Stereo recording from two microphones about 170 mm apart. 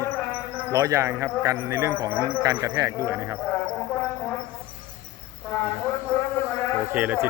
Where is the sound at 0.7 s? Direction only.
20° right (ahead or behind).